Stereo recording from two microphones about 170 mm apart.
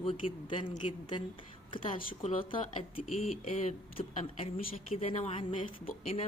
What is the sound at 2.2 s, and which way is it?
Speech, 30° left (ahead or behind).